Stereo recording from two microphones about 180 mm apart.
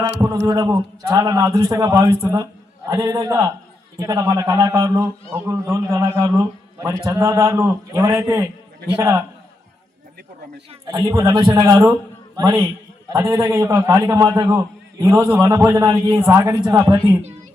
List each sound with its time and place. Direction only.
0.4 s a man's voice: 20° right (ahead or behind)
10.7 s a man's voice: 25° right (ahead or behind)